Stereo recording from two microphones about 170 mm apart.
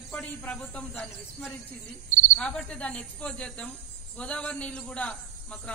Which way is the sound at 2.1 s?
50° right (ahead or behind).